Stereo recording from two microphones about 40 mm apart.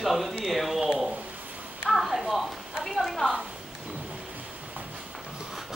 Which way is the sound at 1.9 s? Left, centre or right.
Centre.